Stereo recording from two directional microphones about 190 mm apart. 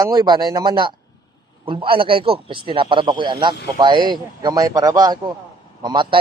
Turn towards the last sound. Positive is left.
turn(degrees=-25)  # may be behind; listen again after turning